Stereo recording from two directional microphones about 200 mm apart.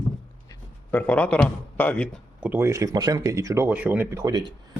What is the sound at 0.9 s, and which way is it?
Speech, 10° left (ahead or behind).